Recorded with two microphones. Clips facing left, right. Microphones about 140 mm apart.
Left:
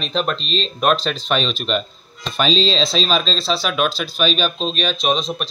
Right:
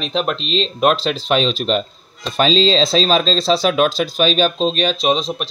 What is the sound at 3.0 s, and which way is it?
Speech, 40° right (ahead or behind).